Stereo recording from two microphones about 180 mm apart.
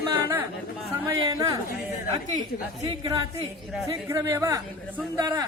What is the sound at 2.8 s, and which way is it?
Speech, 25° right (ahead or behind).